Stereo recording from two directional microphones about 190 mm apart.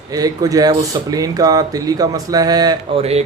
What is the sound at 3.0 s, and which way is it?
Speech, 35° right (ahead or behind).